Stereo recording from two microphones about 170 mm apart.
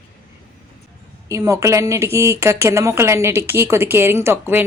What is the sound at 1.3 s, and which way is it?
Speech, 20° right (ahead or behind).